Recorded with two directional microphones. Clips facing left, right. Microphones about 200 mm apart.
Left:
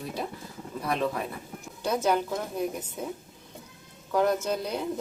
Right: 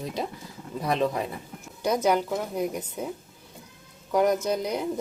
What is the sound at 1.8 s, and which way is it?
Speech, 10° right (ahead or behind).